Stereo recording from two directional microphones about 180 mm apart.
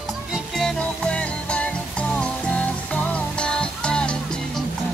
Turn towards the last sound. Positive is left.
turn(degrees=5)  # may be behind; listen again after turning